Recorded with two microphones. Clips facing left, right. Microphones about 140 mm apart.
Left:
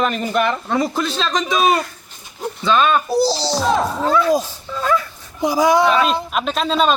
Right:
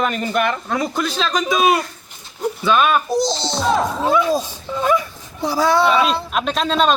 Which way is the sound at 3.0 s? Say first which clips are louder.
Left 2 dB; 5° left (ahead or behind).